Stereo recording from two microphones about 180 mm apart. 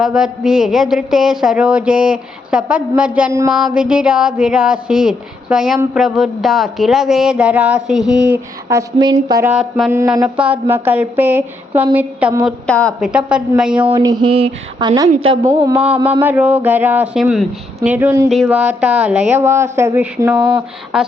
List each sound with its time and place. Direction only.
0.0 s a man's voice: 5° right (ahead or behind)
9.0 s speech: 20° right (ahead or behind)
9.5 s a man's voice: centre (ahead or behind)
12.5 s a man's voice: 5° left (ahead or behind)
13.1 s a man's voice: 5° right (ahead or behind)
13.9 s speech: 20° right (ahead or behind)
15.7 s a man's voice: 5° right (ahead or behind)
18.3 s a man's voice: 5° right (ahead or behind)